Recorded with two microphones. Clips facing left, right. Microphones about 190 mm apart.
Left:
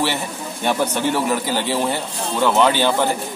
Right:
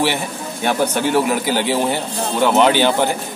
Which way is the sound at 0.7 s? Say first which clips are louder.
Right 2 dB; 10° right (ahead or behind).